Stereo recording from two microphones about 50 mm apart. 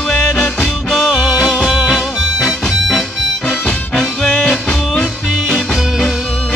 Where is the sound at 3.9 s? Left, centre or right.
Centre.